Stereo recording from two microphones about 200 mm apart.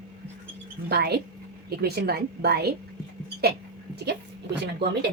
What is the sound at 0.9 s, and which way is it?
Speech, 55° right (ahead or behind).